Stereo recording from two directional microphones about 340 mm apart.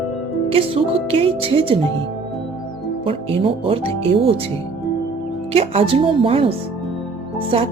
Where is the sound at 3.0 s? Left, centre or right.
Centre.